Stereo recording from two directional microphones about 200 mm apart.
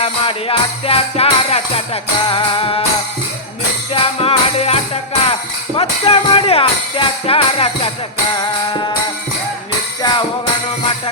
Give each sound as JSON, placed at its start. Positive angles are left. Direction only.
{"t": 0.0, "sound": "music", "side_deg": 30}
{"t": 3.9, "sound": "music", "side_deg": 30}
{"t": 5.2, "sound": "speech", "side_deg": 30}
{"t": 10.0, "sound": "music", "side_deg": 20}